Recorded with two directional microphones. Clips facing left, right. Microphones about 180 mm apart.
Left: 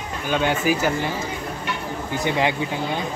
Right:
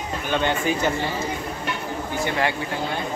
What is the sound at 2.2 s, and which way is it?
Speech, 15° left (ahead or behind).